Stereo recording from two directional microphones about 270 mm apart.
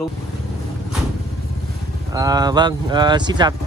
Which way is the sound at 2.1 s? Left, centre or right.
Centre.